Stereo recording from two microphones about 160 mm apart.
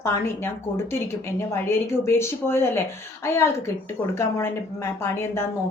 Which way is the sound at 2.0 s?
15° left (ahead or behind).